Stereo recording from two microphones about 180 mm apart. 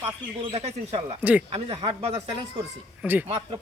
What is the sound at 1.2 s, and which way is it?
Speech, 10° right (ahead or behind).